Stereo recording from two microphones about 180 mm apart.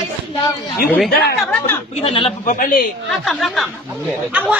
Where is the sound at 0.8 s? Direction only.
10° left (ahead or behind).